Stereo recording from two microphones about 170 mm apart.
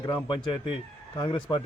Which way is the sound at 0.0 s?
25° left (ahead or behind).